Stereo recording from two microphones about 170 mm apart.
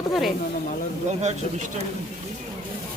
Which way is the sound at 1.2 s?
40° right (ahead or behind).